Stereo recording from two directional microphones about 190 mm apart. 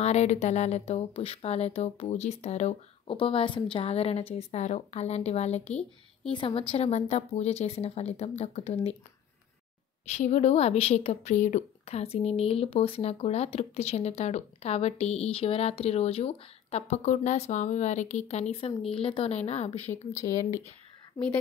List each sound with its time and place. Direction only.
0.0 s a woman's voice: 35° left (ahead or behind)
10.1 s a woman's voice: 35° left (ahead or behind)
20.1 s speech: 15° left (ahead or behind)